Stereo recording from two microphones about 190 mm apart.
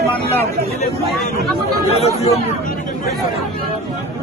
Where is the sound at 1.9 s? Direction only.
35° left (ahead or behind).